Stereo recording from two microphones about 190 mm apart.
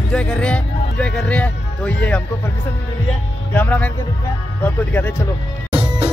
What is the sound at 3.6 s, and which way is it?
Speech, 10° left (ahead or behind).